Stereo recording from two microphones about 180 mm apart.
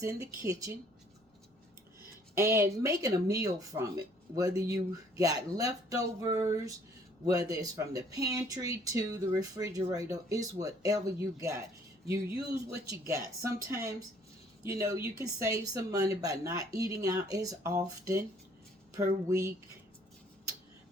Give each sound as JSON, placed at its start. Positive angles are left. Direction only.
{"t": 0.0, "sound": "speech", "side_deg": -15}
{"t": 2.3, "sound": "speech", "side_deg": -15}
{"t": 12.6, "sound": "speech", "side_deg": -15}